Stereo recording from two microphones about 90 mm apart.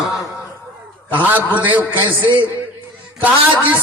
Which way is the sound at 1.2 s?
20° right (ahead or behind).